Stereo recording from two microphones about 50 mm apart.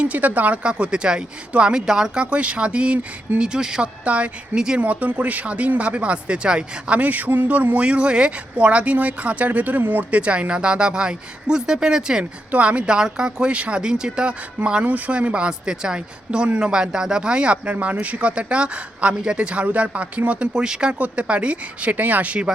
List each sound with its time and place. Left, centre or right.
0.0 s speech: right; by 3.8 s centre
4.0 s speech: right
7.9 s speech: right
12.5 s speech: right
20.5 s speech: centre; by 22.4 s right